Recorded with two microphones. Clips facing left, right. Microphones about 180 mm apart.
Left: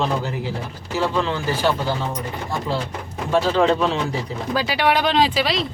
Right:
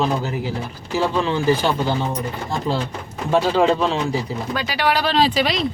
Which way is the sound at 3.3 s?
10° right (ahead or behind).